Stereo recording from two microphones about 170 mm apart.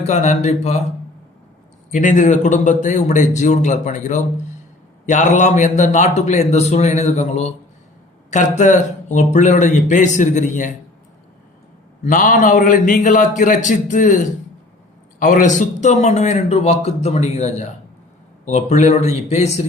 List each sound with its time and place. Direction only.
0.0 s a man's voice: 45° left (ahead or behind)
1.9 s a man's voice: 50° left (ahead or behind)
12.0 s a man's voice: 50° left (ahead or behind)